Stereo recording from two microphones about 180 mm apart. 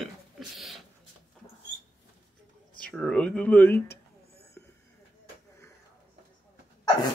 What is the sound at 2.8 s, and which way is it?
Speech, 5° left (ahead or behind).